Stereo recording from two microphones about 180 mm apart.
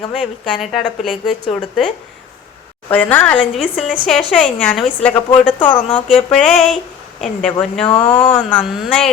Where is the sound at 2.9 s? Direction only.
10° left (ahead or behind).